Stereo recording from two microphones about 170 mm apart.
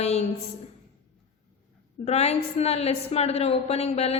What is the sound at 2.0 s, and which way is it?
A woman's voice, 40° left (ahead or behind).